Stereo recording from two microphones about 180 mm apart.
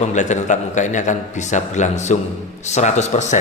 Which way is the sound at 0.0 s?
40° left (ahead or behind).